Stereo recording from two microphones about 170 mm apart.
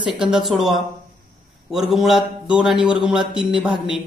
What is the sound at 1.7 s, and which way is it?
A man's voice, centre (ahead or behind).